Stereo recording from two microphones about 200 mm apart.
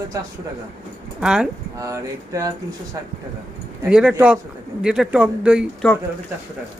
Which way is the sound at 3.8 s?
5° right (ahead or behind).